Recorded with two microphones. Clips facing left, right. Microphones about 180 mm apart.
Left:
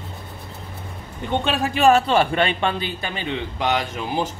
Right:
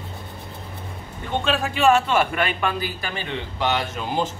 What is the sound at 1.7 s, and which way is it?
A man's voice, 40° left (ahead or behind).